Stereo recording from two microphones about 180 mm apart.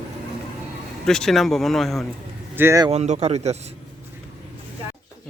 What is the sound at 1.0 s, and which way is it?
Speech, 5° left (ahead or behind).